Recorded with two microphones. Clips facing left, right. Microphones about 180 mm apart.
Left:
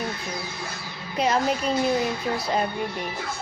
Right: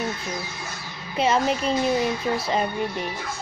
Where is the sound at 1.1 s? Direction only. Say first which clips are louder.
Right 1 dB; centre (ahead or behind).